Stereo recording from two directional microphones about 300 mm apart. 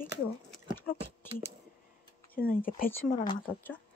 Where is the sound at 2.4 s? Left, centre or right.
Left.